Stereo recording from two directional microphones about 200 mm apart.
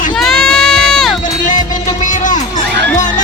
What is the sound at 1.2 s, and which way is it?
Music, 40° left (ahead or behind).